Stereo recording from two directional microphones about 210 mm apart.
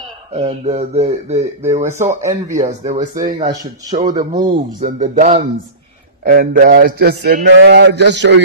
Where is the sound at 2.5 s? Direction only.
35° right (ahead or behind).